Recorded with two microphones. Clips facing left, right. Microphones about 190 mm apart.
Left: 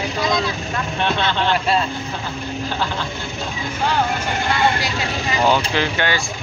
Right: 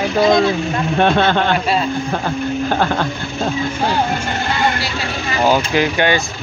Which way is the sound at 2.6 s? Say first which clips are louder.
Right 6 dB; 55° right (ahead or behind).